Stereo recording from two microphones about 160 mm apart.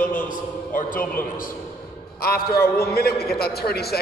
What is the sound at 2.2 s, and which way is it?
A man's voice, 70° left (ahead or behind).